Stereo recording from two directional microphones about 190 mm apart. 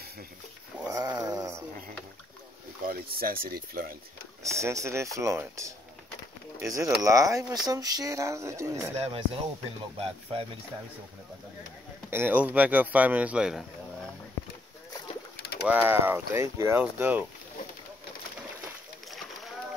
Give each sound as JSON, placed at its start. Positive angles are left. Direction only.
{"t": 0.8, "sound": "a sound", "side_deg": -20}
{"t": 2.9, "sound": "speech", "side_deg": -50}
{"t": 4.4, "sound": "speech", "side_deg": -15}
{"t": 8.9, "sound": "speech", "side_deg": -35}
{"t": 12.1, "sound": "speech", "side_deg": -10}
{"t": 15.7, "sound": "speech", "side_deg": -10}
{"t": 19.0, "sound": "a sound", "side_deg": 0}